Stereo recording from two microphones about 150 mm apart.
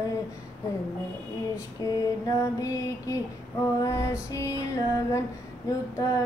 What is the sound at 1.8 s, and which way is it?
Female singing, 20° left (ahead or behind).